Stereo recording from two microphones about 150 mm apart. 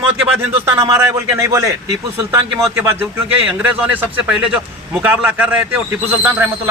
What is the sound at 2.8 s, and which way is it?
Speech, 15° right (ahead or behind).